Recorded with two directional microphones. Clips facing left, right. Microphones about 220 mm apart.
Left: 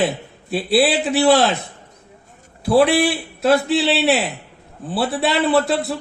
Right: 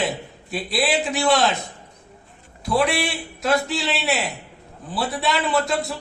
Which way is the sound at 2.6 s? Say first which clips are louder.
Left 7 dB; 35° left (ahead or behind).